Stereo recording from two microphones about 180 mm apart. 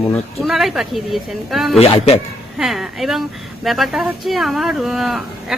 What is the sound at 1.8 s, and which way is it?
Speech, 35° left (ahead or behind).